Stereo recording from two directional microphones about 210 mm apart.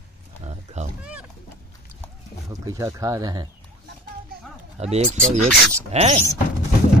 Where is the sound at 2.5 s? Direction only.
15° right (ahead or behind).